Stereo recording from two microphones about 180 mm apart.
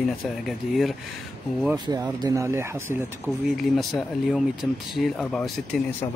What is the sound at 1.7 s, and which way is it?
Speech, 20° right (ahead or behind).